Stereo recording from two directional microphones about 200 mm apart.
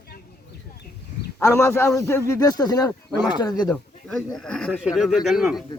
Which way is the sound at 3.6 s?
Centre (ahead or behind).